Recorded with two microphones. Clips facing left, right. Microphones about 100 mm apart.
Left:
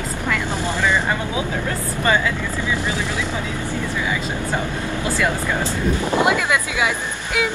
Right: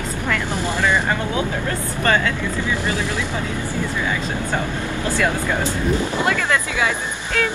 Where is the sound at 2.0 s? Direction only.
10° left (ahead or behind).